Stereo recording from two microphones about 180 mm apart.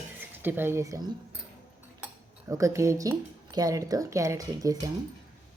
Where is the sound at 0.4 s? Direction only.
10° right (ahead or behind).